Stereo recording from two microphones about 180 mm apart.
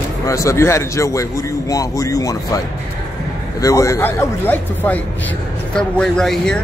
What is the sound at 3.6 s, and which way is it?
A man's voice, 15° left (ahead or behind).